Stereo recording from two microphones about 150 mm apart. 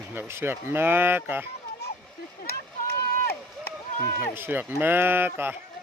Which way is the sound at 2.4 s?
90° left.